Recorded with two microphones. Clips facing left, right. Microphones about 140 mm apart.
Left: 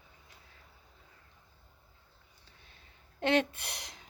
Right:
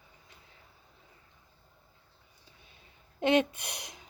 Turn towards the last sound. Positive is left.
turn(degrees=-15)  # may be behind; listen again after turning